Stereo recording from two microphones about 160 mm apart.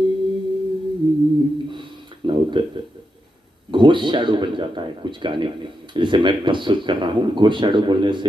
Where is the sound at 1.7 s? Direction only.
30° right (ahead or behind).